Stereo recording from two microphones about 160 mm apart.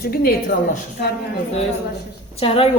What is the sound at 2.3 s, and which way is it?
Speech, 35° left (ahead or behind).